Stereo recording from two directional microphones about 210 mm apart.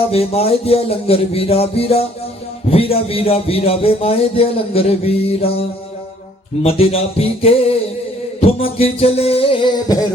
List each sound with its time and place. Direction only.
0.1 s speech: 30° left (ahead or behind)